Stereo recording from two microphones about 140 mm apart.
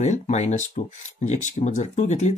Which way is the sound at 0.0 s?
55° left (ahead or behind).